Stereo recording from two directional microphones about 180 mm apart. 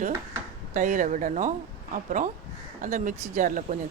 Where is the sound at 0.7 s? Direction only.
45° right (ahead or behind).